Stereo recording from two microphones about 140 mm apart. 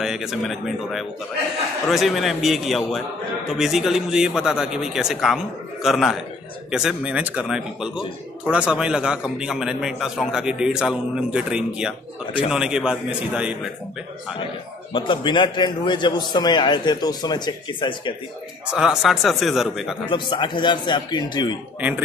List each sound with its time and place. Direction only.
0.0 s a man's voice: 5° right (ahead or behind)
14.9 s a man's voice: 35° left (ahead or behind)
18.7 s a man's voice: 5° right (ahead or behind)
20.1 s a man's voice: 35° left (ahead or behind)